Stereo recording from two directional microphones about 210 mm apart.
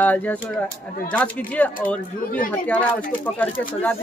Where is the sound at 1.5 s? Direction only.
5° left (ahead or behind).